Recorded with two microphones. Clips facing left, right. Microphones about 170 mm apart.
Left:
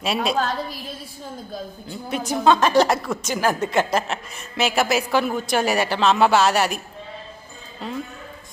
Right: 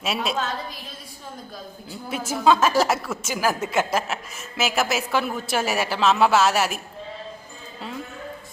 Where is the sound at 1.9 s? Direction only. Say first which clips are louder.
Left 3 dB; 5° right (ahead or behind).